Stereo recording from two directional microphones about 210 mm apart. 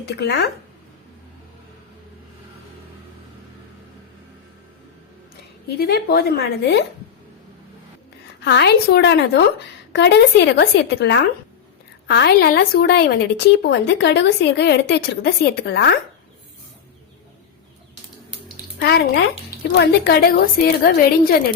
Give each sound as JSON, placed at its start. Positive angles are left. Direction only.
{"t": 0.0, "sound": "a woman's voice", "side_deg": 55}
{"t": 5.7, "sound": "a woman's voice", "side_deg": 45}
{"t": 8.4, "sound": "a woman's voice", "side_deg": 50}
{"t": 18.5, "sound": "a woman's voice", "side_deg": 50}